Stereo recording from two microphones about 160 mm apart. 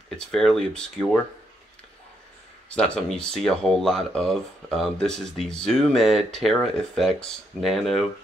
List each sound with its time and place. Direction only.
0.3 s speech: 5° left (ahead or behind)
2.7 s speech: 5° left (ahead or behind)